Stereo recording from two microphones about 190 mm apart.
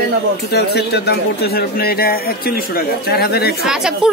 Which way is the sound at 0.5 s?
60° left (ahead or behind).